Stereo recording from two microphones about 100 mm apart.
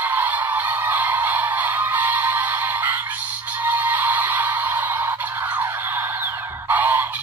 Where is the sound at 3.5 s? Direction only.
15° right (ahead or behind).